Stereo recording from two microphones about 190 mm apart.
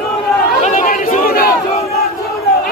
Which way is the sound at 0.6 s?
45° left (ahead or behind).